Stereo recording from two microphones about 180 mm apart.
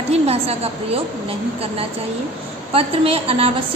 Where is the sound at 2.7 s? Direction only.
30° right (ahead or behind).